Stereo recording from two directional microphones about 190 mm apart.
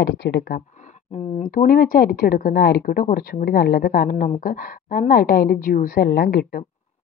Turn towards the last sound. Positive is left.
turn(degrees=55)  # may be behind; listen again after turning